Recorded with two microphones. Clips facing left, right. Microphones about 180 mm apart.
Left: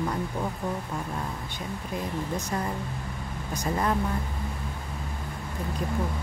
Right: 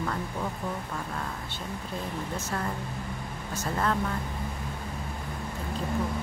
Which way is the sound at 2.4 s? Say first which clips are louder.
Left 2 dB; 15° left (ahead or behind).